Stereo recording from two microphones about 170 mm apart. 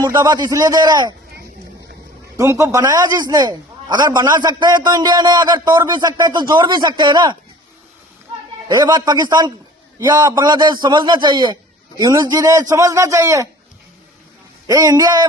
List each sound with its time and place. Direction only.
0.0 s a man's voice: 20° right (ahead or behind)
2.3 s a man's voice: 15° right (ahead or behind)
8.7 s a man's voice: 25° right (ahead or behind)
14.7 s a man's voice: 20° right (ahead or behind)